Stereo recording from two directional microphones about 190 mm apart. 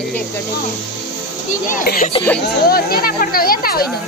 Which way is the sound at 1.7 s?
45° left (ahead or behind).